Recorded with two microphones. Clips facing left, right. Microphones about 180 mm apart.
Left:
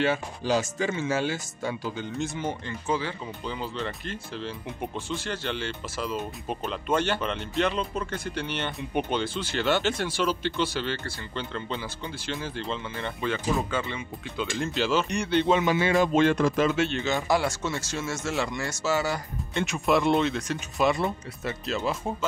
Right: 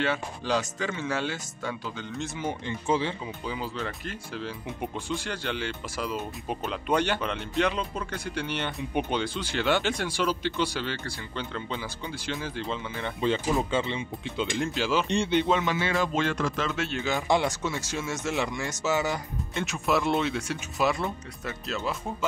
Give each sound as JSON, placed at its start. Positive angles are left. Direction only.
{"t": 0.5, "sound": "speech", "side_deg": 5}
{"t": 2.9, "sound": "speech", "side_deg": -25}
{"t": 3.4, "sound": "speech", "side_deg": -5}
{"t": 13.2, "sound": "speech", "side_deg": -25}
{"t": 14.7, "sound": "speech", "side_deg": -10}
{"t": 15.0, "sound": "speech", "side_deg": -30}
{"t": 15.4, "sound": "speech", "side_deg": 5}
{"t": 15.7, "sound": "speech", "side_deg": 15}
{"t": 16.7, "sound": "speech", "side_deg": -5}
{"t": 17.3, "sound": "speech", "side_deg": -20}
{"t": 19.5, "sound": "speech", "side_deg": 0}